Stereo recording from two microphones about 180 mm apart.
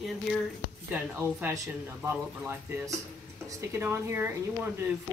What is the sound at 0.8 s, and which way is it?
Speech, 10° right (ahead or behind).